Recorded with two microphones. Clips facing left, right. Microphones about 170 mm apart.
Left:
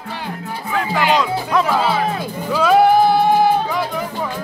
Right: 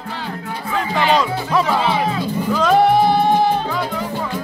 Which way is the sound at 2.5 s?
5° left (ahead or behind).